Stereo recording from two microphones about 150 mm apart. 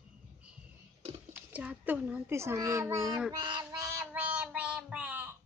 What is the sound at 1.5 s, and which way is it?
Speech, 10° right (ahead or behind).